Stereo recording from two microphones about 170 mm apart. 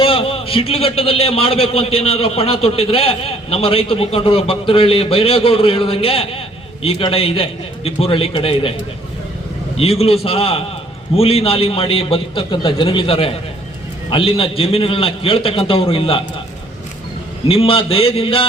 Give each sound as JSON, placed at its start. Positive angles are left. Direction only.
{"t": 0.0, "sound": "a man's voice", "side_deg": 35}
{"t": 9.7, "sound": "a man's voice", "side_deg": 35}
{"t": 17.5, "sound": "a man's voice", "side_deg": 35}